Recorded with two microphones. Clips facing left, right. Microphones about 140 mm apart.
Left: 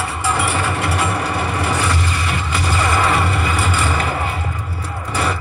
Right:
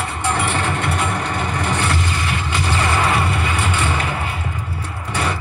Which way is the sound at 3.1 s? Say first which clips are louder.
Left 1 dB; centre (ahead or behind).